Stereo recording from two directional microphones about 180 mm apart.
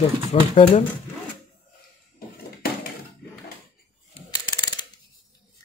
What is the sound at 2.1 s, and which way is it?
Dishes, 55° left (ahead or behind).